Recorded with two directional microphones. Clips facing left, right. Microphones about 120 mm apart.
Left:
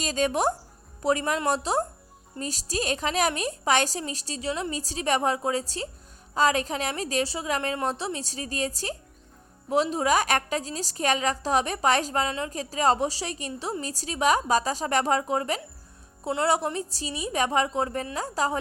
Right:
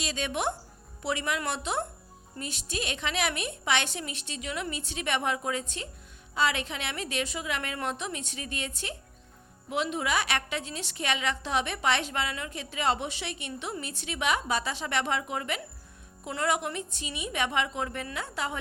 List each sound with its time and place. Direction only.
0.0 s a woman's voice: 40° left (ahead or behind)